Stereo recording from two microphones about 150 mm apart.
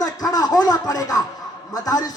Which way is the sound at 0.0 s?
25° left (ahead or behind).